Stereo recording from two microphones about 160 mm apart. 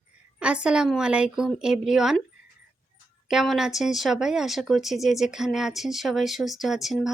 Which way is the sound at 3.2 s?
Centre (ahead or behind).